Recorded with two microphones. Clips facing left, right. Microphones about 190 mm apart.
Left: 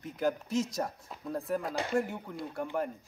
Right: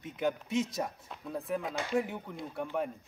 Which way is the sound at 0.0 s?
Centre (ahead or behind).